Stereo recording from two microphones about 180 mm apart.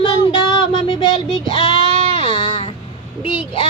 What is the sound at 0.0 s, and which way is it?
Child singing, 30° left (ahead or behind).